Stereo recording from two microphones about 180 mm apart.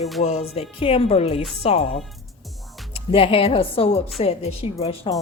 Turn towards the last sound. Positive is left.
turn(degrees=35)  # may be behind; listen again after turning